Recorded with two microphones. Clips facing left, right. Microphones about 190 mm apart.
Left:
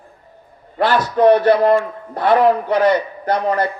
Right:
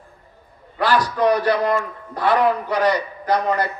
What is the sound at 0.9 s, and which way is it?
A man's voice, 30° left (ahead or behind).